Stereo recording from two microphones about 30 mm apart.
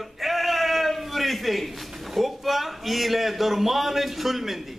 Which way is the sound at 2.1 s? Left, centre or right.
Centre.